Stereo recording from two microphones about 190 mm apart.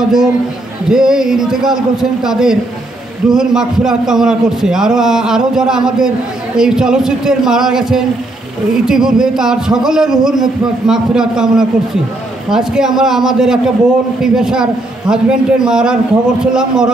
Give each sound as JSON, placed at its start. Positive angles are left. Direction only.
{"t": 0.8, "sound": "a man's voice", "side_deg": -5}